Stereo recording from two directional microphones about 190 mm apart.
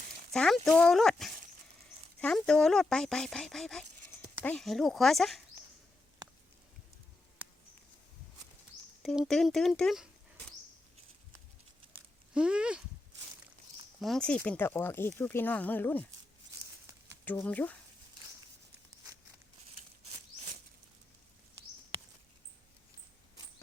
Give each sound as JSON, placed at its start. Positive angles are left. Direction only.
{"t": 0.3, "sound": "speech", "side_deg": 0}
{"t": 9.0, "sound": "speech", "side_deg": 0}
{"t": 12.3, "sound": "speech", "side_deg": -5}
{"t": 14.0, "sound": "speech", "side_deg": 5}
{"t": 17.2, "sound": "speech", "side_deg": 10}